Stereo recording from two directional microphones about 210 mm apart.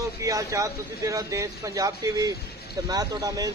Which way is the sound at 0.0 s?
15° right (ahead or behind).